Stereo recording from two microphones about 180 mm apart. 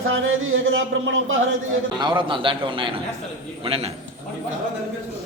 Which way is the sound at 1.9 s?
25° right (ahead or behind).